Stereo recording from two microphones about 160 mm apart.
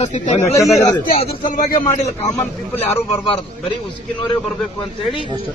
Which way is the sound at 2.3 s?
15° left (ahead or behind).